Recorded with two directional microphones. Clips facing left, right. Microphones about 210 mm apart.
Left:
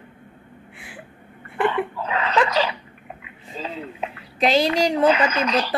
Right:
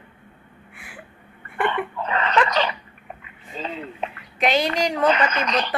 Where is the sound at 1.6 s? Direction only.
5° left (ahead or behind).